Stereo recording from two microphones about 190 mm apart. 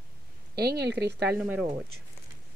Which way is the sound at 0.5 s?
60° right (ahead or behind).